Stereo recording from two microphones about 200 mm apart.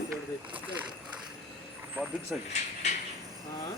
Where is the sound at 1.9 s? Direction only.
5° right (ahead or behind).